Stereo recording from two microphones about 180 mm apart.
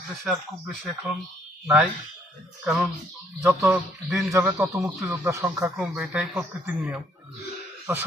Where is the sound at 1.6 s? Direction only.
5° right (ahead or behind).